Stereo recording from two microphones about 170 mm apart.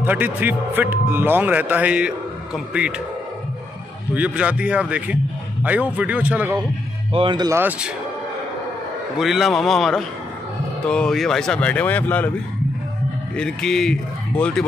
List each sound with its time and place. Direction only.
0.0 s speech: 10° right (ahead or behind)
4.1 s speech: 10° right (ahead or behind)
7.1 s speech: 30° right (ahead or behind)
7.5 s speech: 10° right (ahead or behind)
9.2 s speech: centre (ahead or behind)
13.4 s speech: 5° left (ahead or behind)